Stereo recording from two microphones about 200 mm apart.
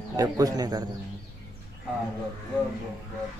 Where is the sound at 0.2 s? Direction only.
15° right (ahead or behind).